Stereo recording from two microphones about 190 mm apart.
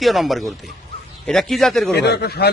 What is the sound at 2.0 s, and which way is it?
Speech, 60° left (ahead or behind).